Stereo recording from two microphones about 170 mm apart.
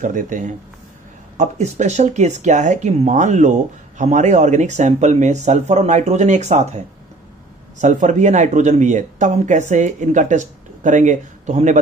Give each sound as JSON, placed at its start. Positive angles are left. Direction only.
{"t": 0.0, "sound": "speech", "side_deg": -50}
{"t": 7.8, "sound": "speech", "side_deg": -45}